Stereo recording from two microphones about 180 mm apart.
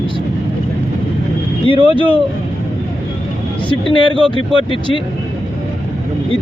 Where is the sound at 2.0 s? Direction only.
30° right (ahead or behind).